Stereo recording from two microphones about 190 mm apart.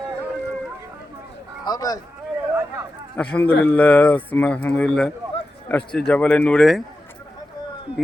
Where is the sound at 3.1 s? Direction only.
5° left (ahead or behind).